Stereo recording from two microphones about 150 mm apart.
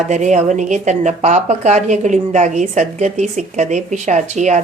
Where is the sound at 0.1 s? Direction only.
55° right (ahead or behind).